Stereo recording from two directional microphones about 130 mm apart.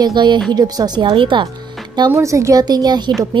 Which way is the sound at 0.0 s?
35° right (ahead or behind).